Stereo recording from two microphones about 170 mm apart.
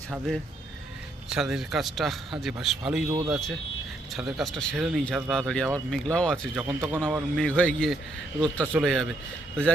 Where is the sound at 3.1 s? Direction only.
20° right (ahead or behind).